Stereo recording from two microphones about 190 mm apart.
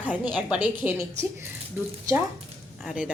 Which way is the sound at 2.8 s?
5° right (ahead or behind).